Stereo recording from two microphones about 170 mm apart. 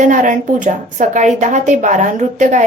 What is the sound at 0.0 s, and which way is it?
A woman's voice, 50° right (ahead or behind).